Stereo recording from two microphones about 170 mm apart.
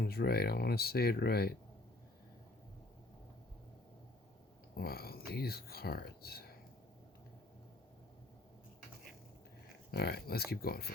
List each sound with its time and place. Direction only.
0.0 s speech: 65° left (ahead or behind)
4.8 s speech: 65° left (ahead or behind)
9.9 s speech: 65° left (ahead or behind)